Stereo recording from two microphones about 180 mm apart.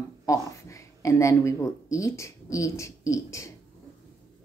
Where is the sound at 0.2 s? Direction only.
20° left (ahead or behind).